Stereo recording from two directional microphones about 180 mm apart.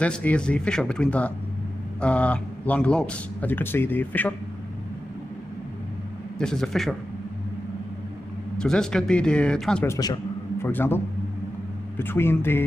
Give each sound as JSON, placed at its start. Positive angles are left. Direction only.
{"t": 0.0, "sound": "speech", "side_deg": 5}
{"t": 6.3, "sound": "speech", "side_deg": 5}
{"t": 8.5, "sound": "speech", "side_deg": 5}
{"t": 9.8, "sound": "a man's voice", "side_deg": 20}
{"t": 12.0, "sound": "speech", "side_deg": 10}